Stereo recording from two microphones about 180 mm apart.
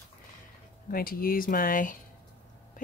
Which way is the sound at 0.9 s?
55° left (ahead or behind).